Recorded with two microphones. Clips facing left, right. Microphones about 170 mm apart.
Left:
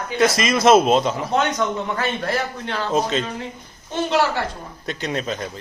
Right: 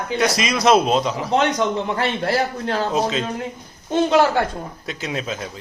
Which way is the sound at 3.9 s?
50° right (ahead or behind).